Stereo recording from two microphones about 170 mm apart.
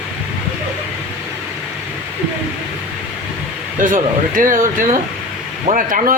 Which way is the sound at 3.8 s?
55° right (ahead or behind).